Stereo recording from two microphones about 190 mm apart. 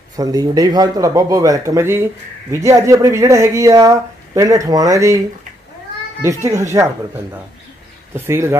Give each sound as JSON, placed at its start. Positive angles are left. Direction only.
{"t": 0.1, "sound": "speech", "side_deg": -20}
{"t": 6.2, "sound": "speech", "side_deg": -15}
{"t": 8.3, "sound": "speech", "side_deg": -15}